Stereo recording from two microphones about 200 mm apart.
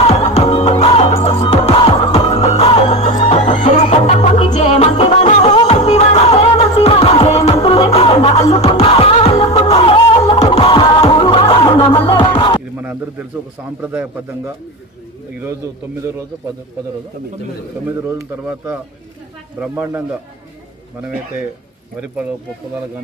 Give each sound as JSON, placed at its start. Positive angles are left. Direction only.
{"t": 0.0, "sound": "music", "side_deg": 30}
{"t": 13.7, "sound": "a man's voice", "side_deg": -10}
{"t": 19.6, "sound": "a man's voice", "side_deg": -10}